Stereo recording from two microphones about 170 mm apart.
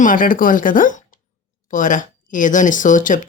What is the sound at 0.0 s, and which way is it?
Speech, 50° left (ahead or behind).